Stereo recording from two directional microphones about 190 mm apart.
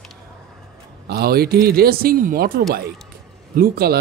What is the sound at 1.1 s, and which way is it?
Speech, 55° right (ahead or behind).